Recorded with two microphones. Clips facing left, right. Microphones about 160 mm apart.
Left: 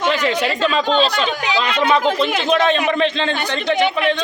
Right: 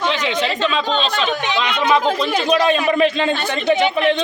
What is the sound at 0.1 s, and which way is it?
Speech, 5° left (ahead or behind).